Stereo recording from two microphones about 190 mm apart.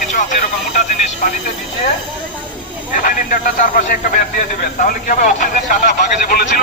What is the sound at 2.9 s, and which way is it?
A man's voice, 45° left (ahead or behind).